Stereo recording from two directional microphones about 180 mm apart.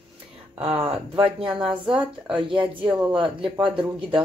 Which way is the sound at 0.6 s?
30° right (ahead or behind).